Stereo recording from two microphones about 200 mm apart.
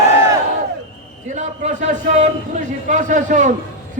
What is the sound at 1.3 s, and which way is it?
A man's voice, 35° right (ahead or behind).